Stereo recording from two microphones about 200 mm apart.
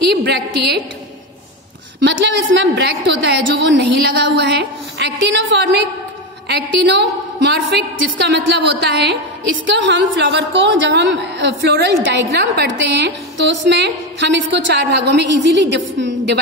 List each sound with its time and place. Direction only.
0.1 s a woman's voice: 55° right (ahead or behind)
2.0 s a woman's voice: 65° right (ahead or behind)